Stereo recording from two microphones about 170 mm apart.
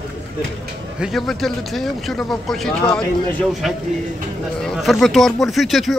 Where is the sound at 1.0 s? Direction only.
Centre (ahead or behind).